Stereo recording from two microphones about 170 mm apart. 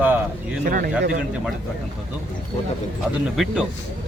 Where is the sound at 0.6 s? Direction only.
55° right (ahead or behind).